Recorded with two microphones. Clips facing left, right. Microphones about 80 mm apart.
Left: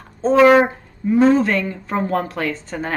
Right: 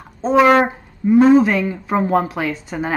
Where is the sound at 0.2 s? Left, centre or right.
Centre.